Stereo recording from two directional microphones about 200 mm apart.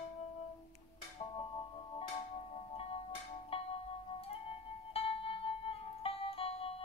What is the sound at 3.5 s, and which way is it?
Music, 30° left (ahead or behind).